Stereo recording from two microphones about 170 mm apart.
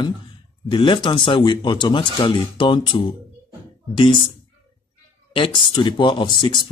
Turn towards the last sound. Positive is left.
turn(degrees=30)  # may be behind; listen again after turning